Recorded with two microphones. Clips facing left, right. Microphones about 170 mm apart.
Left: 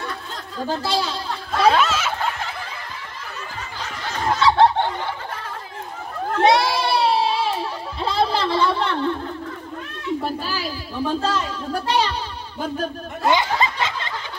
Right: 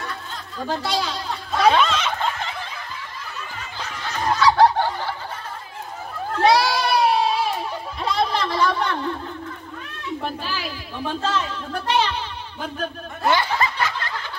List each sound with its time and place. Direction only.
0.7 s speech: 30° left (ahead or behind)
1.7 s snicker: 5° left (ahead or behind)
4.4 s fowl: 25° left (ahead or behind)
6.4 s a sound: 25° left (ahead or behind)
10.2 s a child's voice: 40° left (ahead or behind)
13.3 s snicker: 20° left (ahead or behind)